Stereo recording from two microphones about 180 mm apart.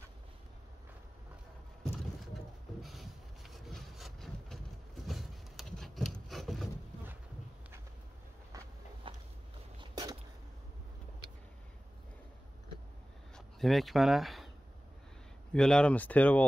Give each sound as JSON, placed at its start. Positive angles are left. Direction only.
{"t": 2.8, "sound": "wood", "side_deg": 0}
{"t": 9.1, "sound": "a sound", "side_deg": -30}
{"t": 13.6, "sound": "speech", "side_deg": 0}
{"t": 15.5, "sound": "speech", "side_deg": 5}